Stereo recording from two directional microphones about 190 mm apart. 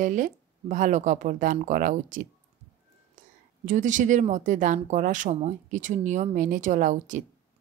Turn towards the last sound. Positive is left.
turn(degrees=-40)  # may be behind; listen again after turning